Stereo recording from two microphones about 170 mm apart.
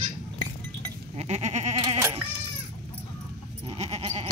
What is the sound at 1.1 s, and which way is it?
Goat, 40° right (ahead or behind).